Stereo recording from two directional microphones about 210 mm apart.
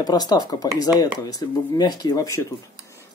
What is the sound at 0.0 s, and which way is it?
Speech, 20° left (ahead or behind).